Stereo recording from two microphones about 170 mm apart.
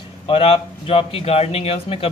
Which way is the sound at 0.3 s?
35° left (ahead or behind).